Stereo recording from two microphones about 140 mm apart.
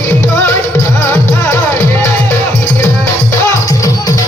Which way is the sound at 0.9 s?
20° left (ahead or behind).